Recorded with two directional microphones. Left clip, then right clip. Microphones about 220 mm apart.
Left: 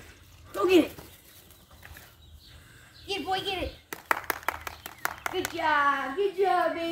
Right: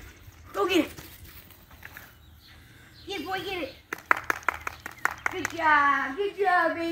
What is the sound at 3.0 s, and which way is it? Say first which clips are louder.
Clapping: left 2 dB; 50° left (ahead or behind).